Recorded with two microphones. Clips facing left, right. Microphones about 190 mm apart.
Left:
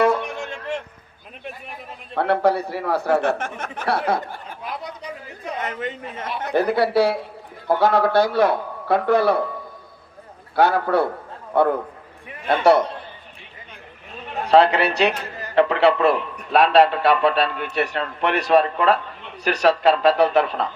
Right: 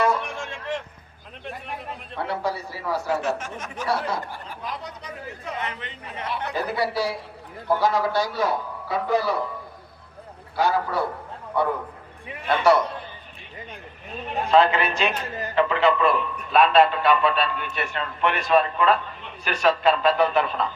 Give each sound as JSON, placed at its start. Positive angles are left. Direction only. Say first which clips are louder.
{"t": 2.1, "sound": "speech", "louder": "left 9 dB", "side_deg": 60}
{"t": 5.6, "sound": "a man's voice", "louder": "left 7 dB", "side_deg": 45}
{"t": 6.5, "sound": "speech", "louder": "left 9 dB", "side_deg": 60}
{"t": 10.5, "sound": "speech", "louder": "left 5 dB", "side_deg": 60}
{"t": 14.5, "sound": "a man's voice", "louder": "left 4 dB", "side_deg": 70}